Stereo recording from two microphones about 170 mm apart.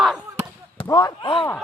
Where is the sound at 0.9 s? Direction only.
25° left (ahead or behind).